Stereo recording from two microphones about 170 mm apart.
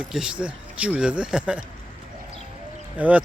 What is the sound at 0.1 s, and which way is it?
Speech, 5° right (ahead or behind).